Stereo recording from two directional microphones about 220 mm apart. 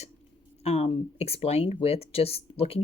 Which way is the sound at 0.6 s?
30° left (ahead or behind).